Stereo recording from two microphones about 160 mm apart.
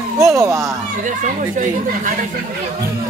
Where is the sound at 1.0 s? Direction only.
55° right (ahead or behind).